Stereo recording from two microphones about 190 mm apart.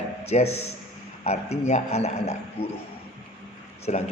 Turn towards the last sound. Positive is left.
turn(degrees=35)  # may be behind; listen again after turning